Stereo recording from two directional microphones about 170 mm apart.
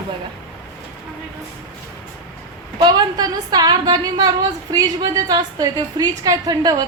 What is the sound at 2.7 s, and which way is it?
A woman's voice, 25° right (ahead or behind).